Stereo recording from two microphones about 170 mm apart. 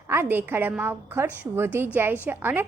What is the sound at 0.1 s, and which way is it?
A woman's voice, 15° right (ahead or behind).